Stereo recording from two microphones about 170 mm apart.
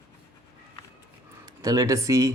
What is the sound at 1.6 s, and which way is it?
Speech, 20° right (ahead or behind).